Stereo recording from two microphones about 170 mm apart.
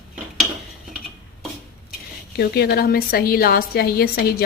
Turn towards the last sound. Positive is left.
turn(degrees=65)  # may be behind; listen again after turning